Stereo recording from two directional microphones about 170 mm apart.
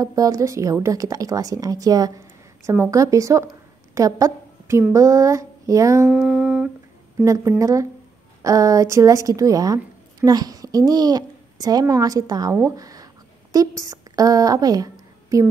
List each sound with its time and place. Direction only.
0.0 s speech: 20° right (ahead or behind)
3.9 s a sound: 20° right (ahead or behind)
4.9 s speech: 20° right (ahead or behind)
6.0 s humming: 5° right (ahead or behind)
7.2 s a child's voice: 20° right (ahead or behind)